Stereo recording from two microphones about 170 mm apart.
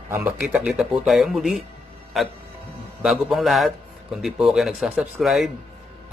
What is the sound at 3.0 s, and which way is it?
A man's voice, centre (ahead or behind).